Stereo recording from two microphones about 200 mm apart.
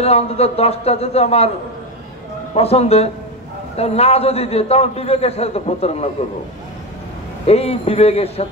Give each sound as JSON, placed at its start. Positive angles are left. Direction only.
{"t": 0.0, "sound": "a man's voice", "side_deg": 30}
{"t": 2.5, "sound": "a man's voice", "side_deg": 30}
{"t": 7.4, "sound": "a man's voice", "side_deg": 30}